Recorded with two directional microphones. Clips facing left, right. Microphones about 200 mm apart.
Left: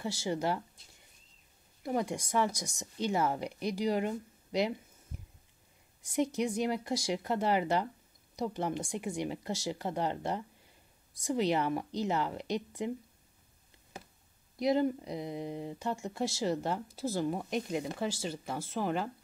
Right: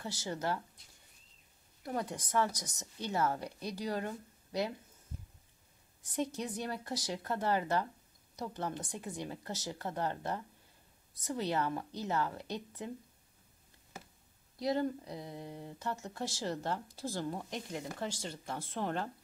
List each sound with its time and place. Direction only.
0.0 s speech: 10° left (ahead or behind)
1.8 s speech: 10° left (ahead or behind)
6.3 s speech: 15° left (ahead or behind)
14.6 s speech: 15° left (ahead or behind)